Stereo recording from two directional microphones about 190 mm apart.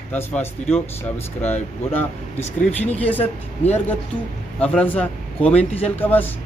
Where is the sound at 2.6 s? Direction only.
35° left (ahead or behind).